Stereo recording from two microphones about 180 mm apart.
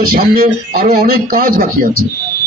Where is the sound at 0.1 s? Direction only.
55° right (ahead or behind).